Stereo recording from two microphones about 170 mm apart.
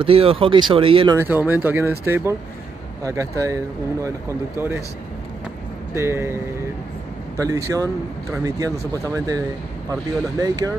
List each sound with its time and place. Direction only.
0.0 s speech: 35° right (ahead or behind)
1.1 s speech: 10° right (ahead or behind)
5.9 s speech: 15° right (ahead or behind)
10.4 s speech: 20° right (ahead or behind)